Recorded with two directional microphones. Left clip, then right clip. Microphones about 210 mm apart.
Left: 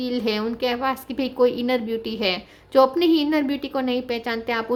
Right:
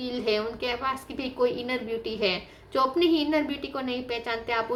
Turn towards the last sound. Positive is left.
turn(degrees=45)  # may be behind; listen again after turning